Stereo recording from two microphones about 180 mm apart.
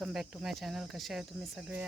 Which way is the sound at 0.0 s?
5° right (ahead or behind).